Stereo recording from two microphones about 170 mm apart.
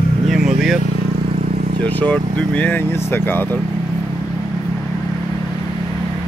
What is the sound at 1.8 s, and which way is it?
Speech, 10° left (ahead or behind).